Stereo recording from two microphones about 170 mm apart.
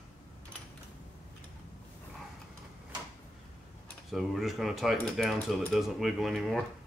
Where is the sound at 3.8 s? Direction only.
Centre (ahead or behind).